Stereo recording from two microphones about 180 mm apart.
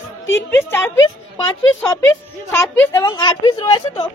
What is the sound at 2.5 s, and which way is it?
A woman's voice, 15° left (ahead or behind).